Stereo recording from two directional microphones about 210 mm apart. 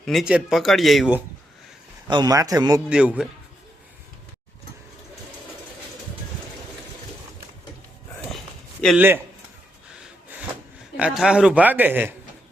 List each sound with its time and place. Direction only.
0.0 s speech: centre (ahead or behind)
2.0 s a man's voice: 20° right (ahead or behind)
2.9 s speech: 5° right (ahead or behind)
9.0 s a man's voice: 10° right (ahead or behind)
10.9 s speech: 5° right (ahead or behind)